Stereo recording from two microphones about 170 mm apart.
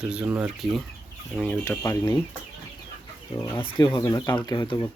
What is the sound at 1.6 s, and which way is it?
Speech, 20° left (ahead or behind).